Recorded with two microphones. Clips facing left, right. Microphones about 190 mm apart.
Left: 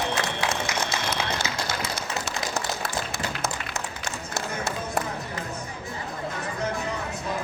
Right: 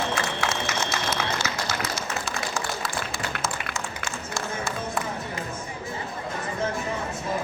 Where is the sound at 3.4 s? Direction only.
65° left (ahead or behind).